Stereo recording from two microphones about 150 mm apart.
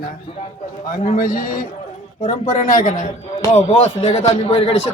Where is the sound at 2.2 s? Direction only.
60° left (ahead or behind).